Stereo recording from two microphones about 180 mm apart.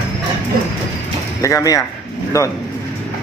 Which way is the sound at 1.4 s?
20° left (ahead or behind).